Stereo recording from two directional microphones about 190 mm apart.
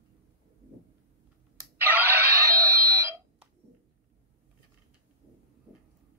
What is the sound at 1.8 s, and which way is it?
Alarm clock, 10° right (ahead or behind).